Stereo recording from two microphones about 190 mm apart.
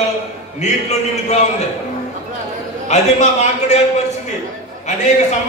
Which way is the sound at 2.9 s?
35° left (ahead or behind).